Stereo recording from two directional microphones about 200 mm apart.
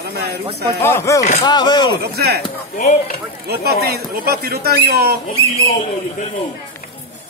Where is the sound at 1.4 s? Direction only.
20° left (ahead or behind).